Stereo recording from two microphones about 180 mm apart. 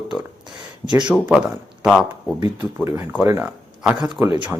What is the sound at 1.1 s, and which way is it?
Speech, 5° right (ahead or behind).